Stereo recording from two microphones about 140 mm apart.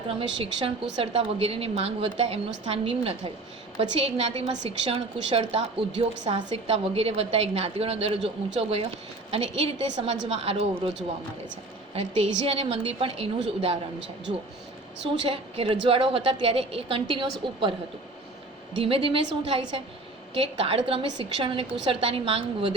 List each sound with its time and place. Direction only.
0.1 s a woman's voice: 40° right (ahead or behind)
11.9 s a woman's voice: 45° right (ahead or behind)
15.2 s a woman's voice: 40° right (ahead or behind)
18.8 s a woman's voice: 40° right (ahead or behind)